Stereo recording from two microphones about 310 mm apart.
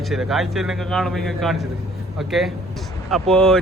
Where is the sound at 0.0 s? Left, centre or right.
Centre.